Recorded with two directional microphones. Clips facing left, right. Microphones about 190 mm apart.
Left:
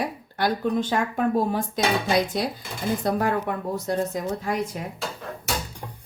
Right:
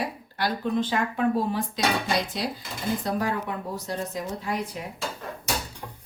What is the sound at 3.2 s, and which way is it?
Speech, 50° left (ahead or behind).